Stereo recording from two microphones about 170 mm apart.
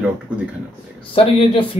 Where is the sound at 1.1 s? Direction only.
35° left (ahead or behind).